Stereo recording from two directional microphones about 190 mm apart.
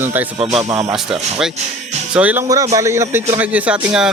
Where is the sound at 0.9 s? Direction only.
Centre (ahead or behind).